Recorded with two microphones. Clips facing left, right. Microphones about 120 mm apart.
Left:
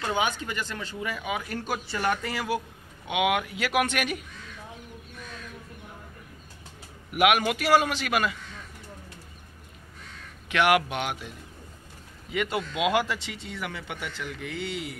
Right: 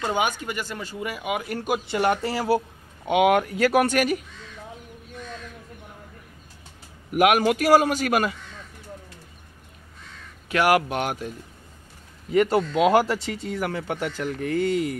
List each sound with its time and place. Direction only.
0.3 s speech: 10° right (ahead or behind); by 4.2 s 40° right (ahead or behind)
7.1 s speech: 40° right (ahead or behind)
10.5 s speech: 40° right (ahead or behind)